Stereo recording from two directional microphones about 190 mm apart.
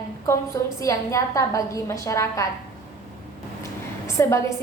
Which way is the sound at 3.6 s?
15° left (ahead or behind).